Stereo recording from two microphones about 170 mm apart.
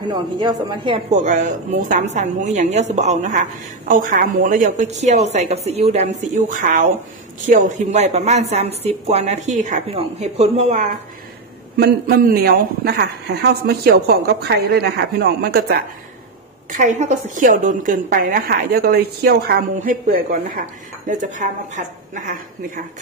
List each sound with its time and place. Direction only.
0.0 s a woman's voice: 25° right (ahead or behind)
1.1 s a woman's voice: 45° right (ahead or behind)
11.7 s speech: 65° right (ahead or behind)
16.7 s a woman's voice: 45° right (ahead or behind)